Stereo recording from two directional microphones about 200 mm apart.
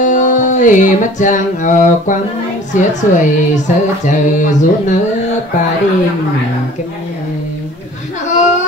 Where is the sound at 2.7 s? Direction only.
40° left (ahead or behind).